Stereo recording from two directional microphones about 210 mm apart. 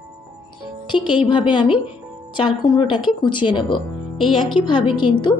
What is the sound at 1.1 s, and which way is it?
Speech, 25° left (ahead or behind).